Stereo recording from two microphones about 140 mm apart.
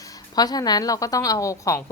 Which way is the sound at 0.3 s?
30° left (ahead or behind).